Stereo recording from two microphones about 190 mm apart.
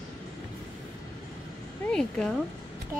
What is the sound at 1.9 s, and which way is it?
Speech, 5° left (ahead or behind).